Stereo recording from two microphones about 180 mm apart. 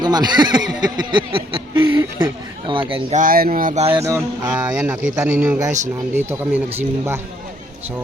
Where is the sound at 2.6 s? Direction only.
30° right (ahead or behind).